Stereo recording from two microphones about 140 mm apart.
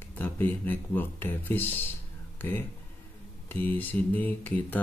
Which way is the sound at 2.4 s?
15° left (ahead or behind).